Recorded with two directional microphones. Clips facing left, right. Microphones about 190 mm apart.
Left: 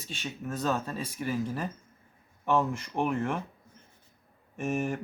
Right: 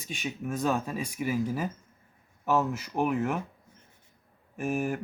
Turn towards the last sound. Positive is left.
turn(degrees=0)  # may be behind; listen again after turning